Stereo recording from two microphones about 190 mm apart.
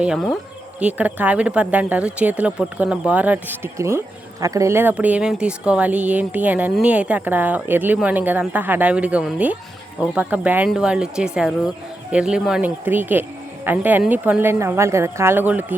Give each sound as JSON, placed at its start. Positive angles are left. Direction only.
{"t": 0.0, "sound": "speech", "side_deg": 0}